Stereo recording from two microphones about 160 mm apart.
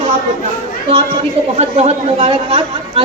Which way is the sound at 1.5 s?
40° right (ahead or behind).